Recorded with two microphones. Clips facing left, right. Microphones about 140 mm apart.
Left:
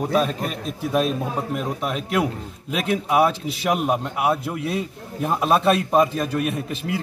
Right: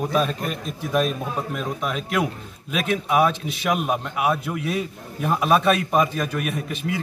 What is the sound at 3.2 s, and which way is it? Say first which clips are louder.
A man's voice: left 1 dB; 35° left (ahead or behind).